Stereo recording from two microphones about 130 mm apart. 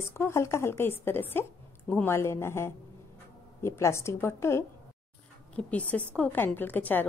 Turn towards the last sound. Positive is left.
turn(degrees=15)  # may be behind; listen again after turning